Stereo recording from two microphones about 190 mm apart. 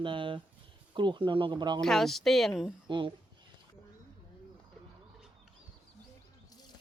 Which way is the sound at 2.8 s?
25° right (ahead or behind).